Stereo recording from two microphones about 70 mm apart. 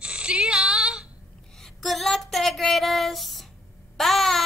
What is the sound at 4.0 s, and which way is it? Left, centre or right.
Babbling, centre.